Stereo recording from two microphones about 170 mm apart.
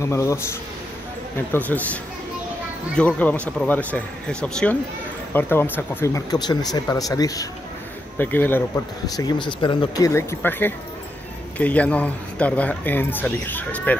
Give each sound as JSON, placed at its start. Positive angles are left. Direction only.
{"t": 0.0, "sound": "speech", "side_deg": 20}
{"t": 3.0, "sound": "speech", "side_deg": 5}
{"t": 9.1, "sound": "speech", "side_deg": 25}